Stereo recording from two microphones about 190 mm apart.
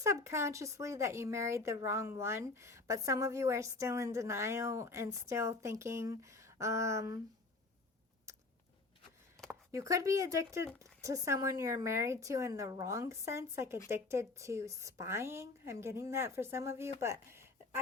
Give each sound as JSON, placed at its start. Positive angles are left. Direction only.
{"t": 0.0, "sound": "speech", "side_deg": -15}
{"t": 9.7, "sound": "speech", "side_deg": -15}